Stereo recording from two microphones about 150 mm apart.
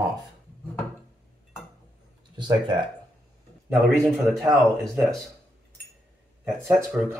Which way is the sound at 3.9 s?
Centre (ahead or behind).